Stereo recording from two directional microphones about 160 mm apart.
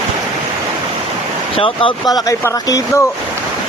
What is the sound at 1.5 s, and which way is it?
Speech, 35° left (ahead or behind).